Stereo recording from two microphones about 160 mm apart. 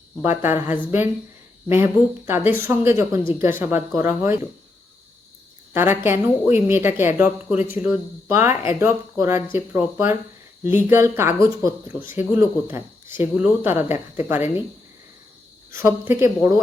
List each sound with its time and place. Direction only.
0.2 s a woman's voice: 15° right (ahead or behind)
5.7 s a woman's voice: 15° right (ahead or behind)
15.7 s a woman's voice: 15° right (ahead or behind)